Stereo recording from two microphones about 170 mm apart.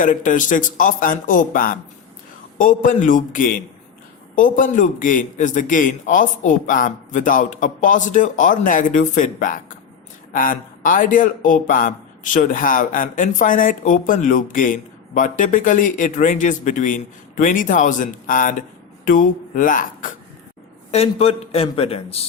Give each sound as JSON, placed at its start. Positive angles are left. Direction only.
{"t": 0.0, "sound": "a man's voice", "side_deg": 50}
{"t": 20.9, "sound": "a man's voice", "side_deg": 35}